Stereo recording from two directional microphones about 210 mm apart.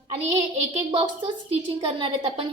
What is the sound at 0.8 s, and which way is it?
A woman's voice, 25° right (ahead or behind).